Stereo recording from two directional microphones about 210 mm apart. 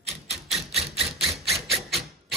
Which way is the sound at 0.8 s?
30° right (ahead or behind).